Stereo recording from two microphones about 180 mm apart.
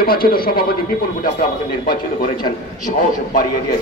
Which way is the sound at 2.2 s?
50° left (ahead or behind).